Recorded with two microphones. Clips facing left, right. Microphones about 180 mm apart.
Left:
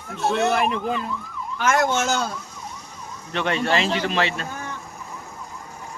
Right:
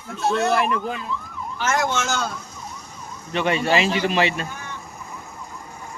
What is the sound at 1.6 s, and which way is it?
Speech, 55° left (ahead or behind).